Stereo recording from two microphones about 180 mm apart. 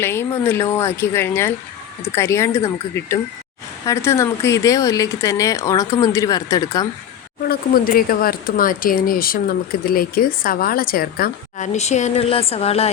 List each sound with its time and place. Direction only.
0.0 s speech: 15° left (ahead or behind)
7.4 s a woman's voice: 55° left (ahead or behind); by 12.9 s 35° left (ahead or behind)